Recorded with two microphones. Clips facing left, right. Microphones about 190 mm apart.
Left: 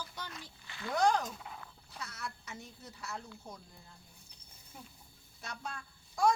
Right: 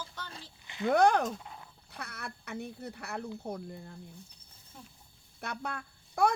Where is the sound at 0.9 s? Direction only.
60° right (ahead or behind).